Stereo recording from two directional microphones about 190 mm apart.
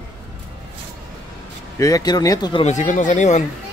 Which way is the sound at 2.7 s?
40° left (ahead or behind).